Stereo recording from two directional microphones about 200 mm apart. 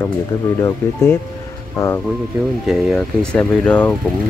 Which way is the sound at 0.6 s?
10° left (ahead or behind).